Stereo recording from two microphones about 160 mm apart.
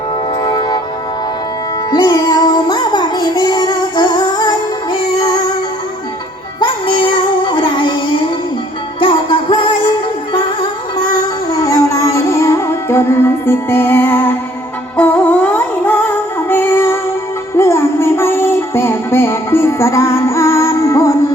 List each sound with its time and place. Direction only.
0.4 s music: 25° left (ahead or behind)
1.9 s music: 25° left (ahead or behind)
6.6 s music: 30° left (ahead or behind)
9.0 s music: 30° left (ahead or behind)